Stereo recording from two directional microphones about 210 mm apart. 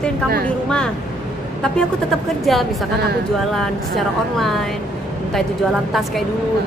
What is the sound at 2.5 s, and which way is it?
A woman's voice, centre (ahead or behind).